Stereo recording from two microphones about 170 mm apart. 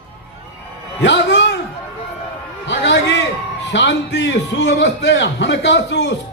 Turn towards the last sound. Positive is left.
turn(degrees=90)